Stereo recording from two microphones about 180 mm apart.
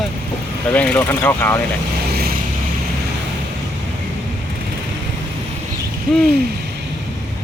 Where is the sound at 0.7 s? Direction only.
10° left (ahead or behind).